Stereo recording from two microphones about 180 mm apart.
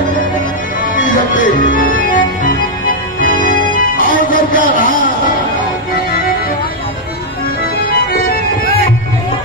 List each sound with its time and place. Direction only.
0.9 s music: 50° left (ahead or behind)
7.9 s organ: 55° left (ahead or behind)